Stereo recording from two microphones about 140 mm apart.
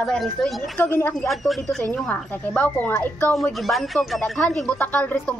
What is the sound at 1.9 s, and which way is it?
Speech, 10° left (ahead or behind).